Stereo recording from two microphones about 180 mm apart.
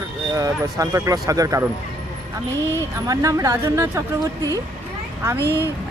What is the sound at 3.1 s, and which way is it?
Speech, 20° right (ahead or behind).